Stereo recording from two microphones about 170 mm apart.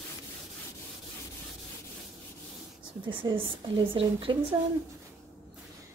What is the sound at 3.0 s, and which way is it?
A woman's voice, 30° right (ahead or behind).